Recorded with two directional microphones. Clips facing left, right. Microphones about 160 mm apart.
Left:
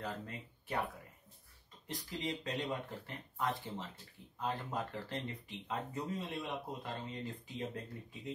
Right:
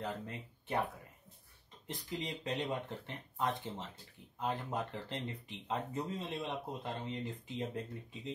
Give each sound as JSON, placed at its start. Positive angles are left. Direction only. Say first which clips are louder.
{"t": 0.0, "sound": "speech", "louder": "right 2 dB", "side_deg": -25}
{"t": 1.9, "sound": "speech", "louder": "left 1 dB", "side_deg": -20}